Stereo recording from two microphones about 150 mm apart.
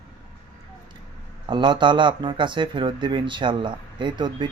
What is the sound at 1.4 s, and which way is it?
A man's voice, 30° right (ahead or behind).